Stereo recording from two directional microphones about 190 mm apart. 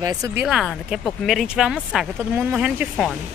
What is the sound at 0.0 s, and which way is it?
Speech, 20° right (ahead or behind).